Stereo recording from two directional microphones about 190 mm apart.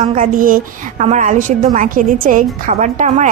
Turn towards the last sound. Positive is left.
turn(degrees=-40)  # may be behind; listen again after turning